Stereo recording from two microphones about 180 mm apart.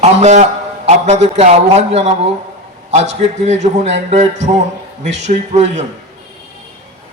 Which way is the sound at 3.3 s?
40° right (ahead or behind).